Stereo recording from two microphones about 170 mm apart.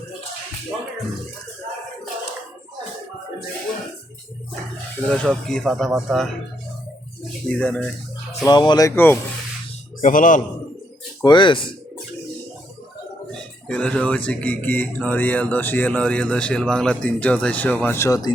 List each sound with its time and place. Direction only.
5.0 s speech: 5° left (ahead or behind)
7.4 s speech: 10° left (ahead or behind)
8.4 s speech: 25° left (ahead or behind)
10.0 s a man's voice: 50° left (ahead or behind)
11.2 s speech: 25° left (ahead or behind)
13.7 s speech: 5° left (ahead or behind)